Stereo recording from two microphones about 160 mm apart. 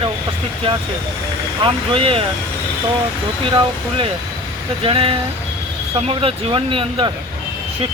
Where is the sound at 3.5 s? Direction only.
30° right (ahead or behind).